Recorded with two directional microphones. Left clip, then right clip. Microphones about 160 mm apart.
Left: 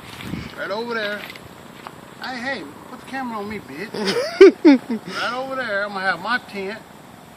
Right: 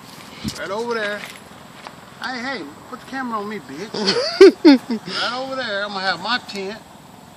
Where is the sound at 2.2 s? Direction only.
55° left (ahead or behind).